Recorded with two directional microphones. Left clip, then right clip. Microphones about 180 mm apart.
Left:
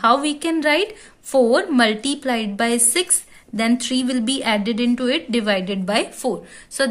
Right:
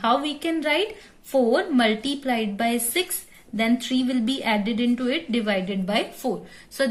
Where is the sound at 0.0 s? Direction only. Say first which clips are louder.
Left 5 dB; 40° left (ahead or behind).